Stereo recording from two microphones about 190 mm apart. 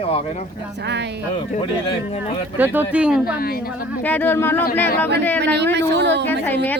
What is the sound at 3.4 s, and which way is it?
Speech, 50° left (ahead or behind).